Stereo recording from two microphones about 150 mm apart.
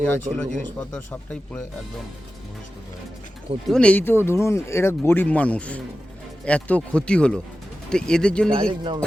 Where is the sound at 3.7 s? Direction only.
5° left (ahead or behind).